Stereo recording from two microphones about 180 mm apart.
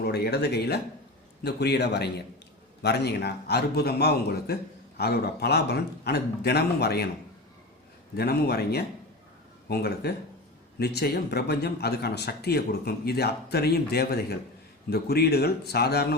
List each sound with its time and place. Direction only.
0.0 s a man's voice: 65° left (ahead or behind)
8.1 s speech: 60° left (ahead or behind)